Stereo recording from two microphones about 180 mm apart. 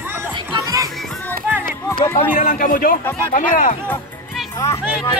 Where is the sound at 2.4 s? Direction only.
45° left (ahead or behind).